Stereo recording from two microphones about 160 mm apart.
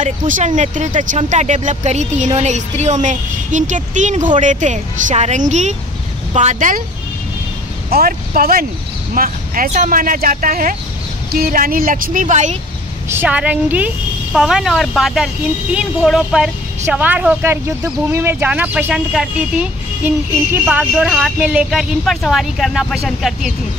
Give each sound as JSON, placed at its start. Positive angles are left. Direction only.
{"t": 0.0, "sound": "speech", "side_deg": -50}
{"t": 7.9, "sound": "speech", "side_deg": -85}
{"t": 8.3, "sound": "speech", "side_deg": -65}
{"t": 13.1, "sound": "a woman's voice", "side_deg": -10}
{"t": 20.9, "sound": "a woman's voice", "side_deg": 0}